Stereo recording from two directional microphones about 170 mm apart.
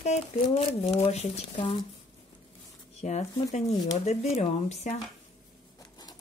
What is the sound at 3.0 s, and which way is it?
Speech, 40° left (ahead or behind).